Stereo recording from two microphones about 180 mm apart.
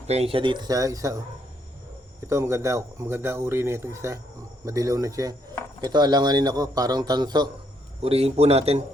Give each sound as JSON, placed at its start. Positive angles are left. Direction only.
{"t": 0.1, "sound": "a man's voice", "side_deg": -35}
{"t": 2.2, "sound": "a man's voice", "side_deg": -15}